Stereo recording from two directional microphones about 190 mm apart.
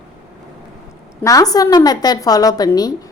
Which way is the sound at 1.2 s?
20° left (ahead or behind).